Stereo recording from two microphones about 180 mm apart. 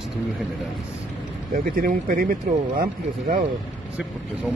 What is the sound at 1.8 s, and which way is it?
Speech, 50° right (ahead or behind).